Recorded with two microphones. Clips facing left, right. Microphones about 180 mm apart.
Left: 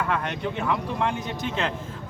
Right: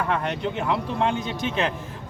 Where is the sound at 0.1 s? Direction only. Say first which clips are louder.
Right 2 dB; 25° right (ahead or behind).